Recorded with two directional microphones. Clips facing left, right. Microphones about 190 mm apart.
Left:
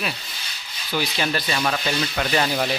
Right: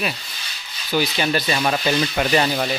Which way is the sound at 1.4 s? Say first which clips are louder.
Right 3 dB; 20° right (ahead or behind).